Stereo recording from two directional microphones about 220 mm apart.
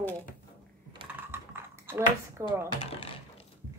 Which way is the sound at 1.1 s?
10° right (ahead or behind).